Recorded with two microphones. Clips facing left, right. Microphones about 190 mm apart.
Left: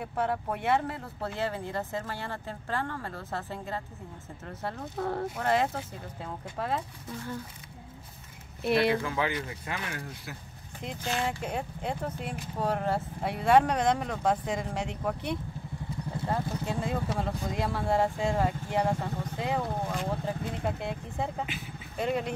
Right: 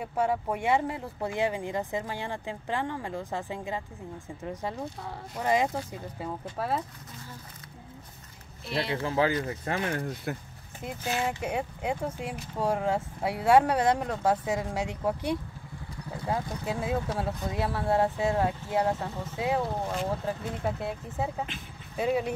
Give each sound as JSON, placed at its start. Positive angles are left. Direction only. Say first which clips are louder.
{"t": 0.0, "sound": "speech", "louder": "right 3 dB", "side_deg": -10}
{"t": 4.9, "sound": "speech", "louder": "left 9 dB", "side_deg": 55}
{"t": 5.4, "sound": "speech", "louder": "right 3 dB", "side_deg": -15}
{"t": 9.0, "sound": "speech", "louder": "right 5 dB", "side_deg": -35}
{"t": 10.3, "sound": "speech", "louder": "right 9 dB", "side_deg": -55}
{"t": 10.8, "sound": "speech", "louder": "right 1 dB", "side_deg": -10}
{"t": 16.6, "sound": "speech", "louder": "right 1 dB", "side_deg": -5}